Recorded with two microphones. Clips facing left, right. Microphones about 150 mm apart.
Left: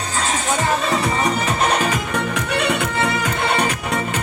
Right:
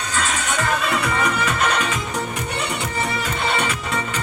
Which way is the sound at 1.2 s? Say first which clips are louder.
Left 2 dB; 40° left (ahead or behind).